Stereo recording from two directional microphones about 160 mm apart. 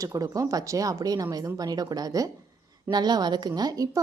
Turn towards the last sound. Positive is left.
turn(degrees=-25)  # may be behind; listen again after turning